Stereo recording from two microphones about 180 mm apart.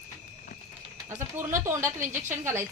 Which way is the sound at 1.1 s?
15° right (ahead or behind).